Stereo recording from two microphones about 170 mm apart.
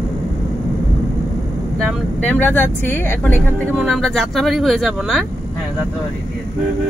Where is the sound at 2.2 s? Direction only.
10° left (ahead or behind).